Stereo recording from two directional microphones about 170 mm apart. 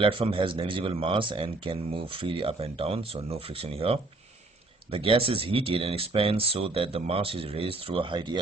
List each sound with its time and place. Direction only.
0.0 s speech: 30° right (ahead or behind)